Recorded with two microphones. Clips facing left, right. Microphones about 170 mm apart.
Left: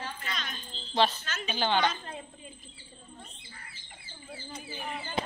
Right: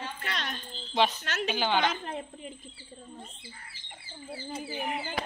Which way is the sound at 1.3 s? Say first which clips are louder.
Right 5 dB; 70° right (ahead or behind).